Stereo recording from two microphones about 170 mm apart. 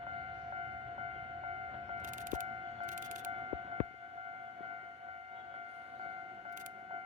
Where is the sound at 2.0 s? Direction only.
50° right (ahead or behind).